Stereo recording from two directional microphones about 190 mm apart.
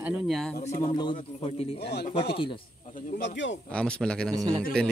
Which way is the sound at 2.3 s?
25° left (ahead or behind).